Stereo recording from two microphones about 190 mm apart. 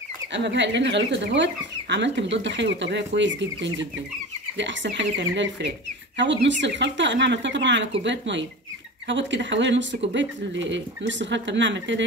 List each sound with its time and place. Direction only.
0.3 s speech: 65° right (ahead or behind)